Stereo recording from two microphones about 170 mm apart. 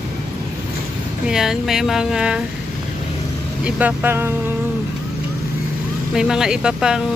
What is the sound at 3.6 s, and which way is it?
Speech, 10° right (ahead or behind).